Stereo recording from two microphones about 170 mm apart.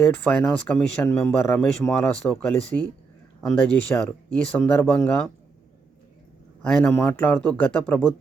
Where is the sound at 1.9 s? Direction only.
5° left (ahead or behind).